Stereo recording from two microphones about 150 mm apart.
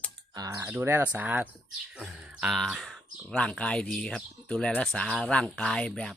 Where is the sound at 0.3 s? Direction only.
25° right (ahead or behind).